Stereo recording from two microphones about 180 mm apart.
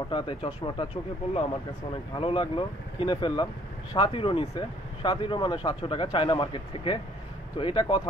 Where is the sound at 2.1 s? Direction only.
30° left (ahead or behind).